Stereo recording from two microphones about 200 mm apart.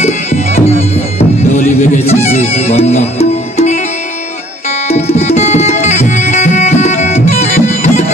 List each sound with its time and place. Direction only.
0.0 s music: 35° left (ahead or behind)
4.8 s tabla: 35° left (ahead or behind)